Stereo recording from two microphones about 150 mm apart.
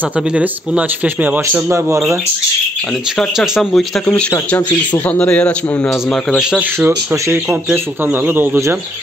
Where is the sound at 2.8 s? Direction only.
Centre (ahead or behind).